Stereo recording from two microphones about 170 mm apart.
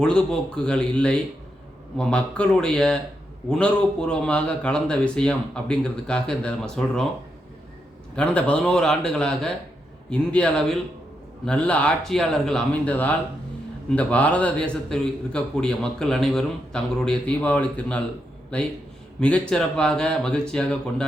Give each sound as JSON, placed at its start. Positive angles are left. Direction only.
{"t": 0.0, "sound": "a man's voice", "side_deg": 5}
{"t": 8.1, "sound": "a man's voice", "side_deg": 5}